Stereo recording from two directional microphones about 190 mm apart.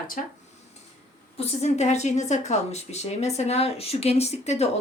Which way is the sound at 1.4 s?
35° left (ahead or behind).